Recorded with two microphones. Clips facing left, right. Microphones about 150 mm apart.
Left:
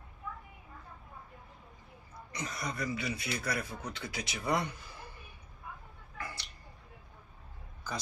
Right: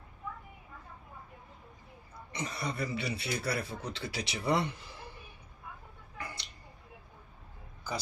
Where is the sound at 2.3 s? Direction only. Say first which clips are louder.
Right 2 dB; 30° right (ahead or behind).